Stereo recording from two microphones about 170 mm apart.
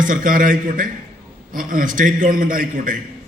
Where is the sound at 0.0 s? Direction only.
50° right (ahead or behind).